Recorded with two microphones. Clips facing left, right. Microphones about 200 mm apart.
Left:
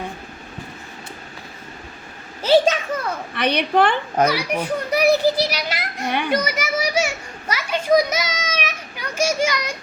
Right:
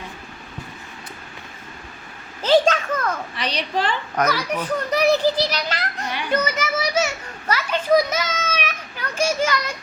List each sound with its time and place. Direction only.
2.4 s children playing: 10° left (ahead or behind)
3.3 s a woman's voice: 60° left (ahead or behind)
4.3 s a child's voice: 10° left (ahead or behind)
6.1 s a woman's voice: 55° left (ahead or behind)
6.3 s children playing: 10° left (ahead or behind)